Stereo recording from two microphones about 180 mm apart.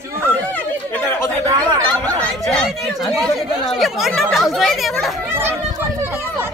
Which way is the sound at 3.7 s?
Centre (ahead or behind).